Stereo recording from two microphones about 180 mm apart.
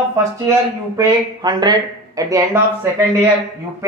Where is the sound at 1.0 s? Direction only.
20° right (ahead or behind).